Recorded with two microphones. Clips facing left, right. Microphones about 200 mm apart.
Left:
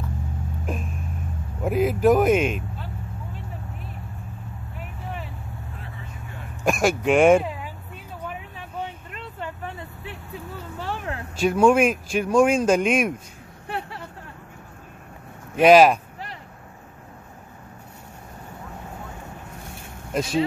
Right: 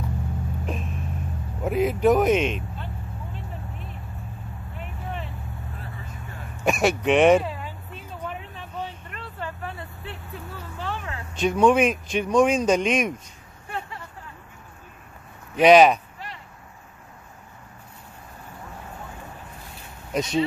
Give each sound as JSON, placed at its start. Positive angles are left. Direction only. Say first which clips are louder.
{"t": 1.6, "sound": "speech", "louder": "left 1 dB", "side_deg": 0}
{"t": 4.7, "sound": "vehicle", "louder": "right 1 dB", "side_deg": 5}
{"t": 6.6, "sound": "speech", "louder": "left 1 dB", "side_deg": 0}
{"t": 7.3, "sound": "vehicle", "louder": "left 1 dB", "side_deg": 10}
{"t": 11.0, "sound": "a sound", "louder": "left 4 dB", "side_deg": 50}
{"t": 11.3, "sound": "speech", "louder": "left 1 dB", "side_deg": 5}
{"t": 13.7, "sound": "vehicle", "louder": "left 2 dB", "side_deg": 75}
{"t": 15.6, "sound": "speech", "louder": "left 1 dB", "side_deg": 5}
{"t": 20.1, "sound": "a sound", "louder": "even", "side_deg": 5}